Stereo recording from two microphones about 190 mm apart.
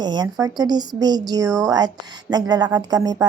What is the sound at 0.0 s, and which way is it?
A woman's voice, 20° right (ahead or behind).